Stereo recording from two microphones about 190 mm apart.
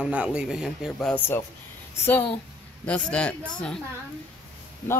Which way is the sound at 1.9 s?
10° left (ahead or behind).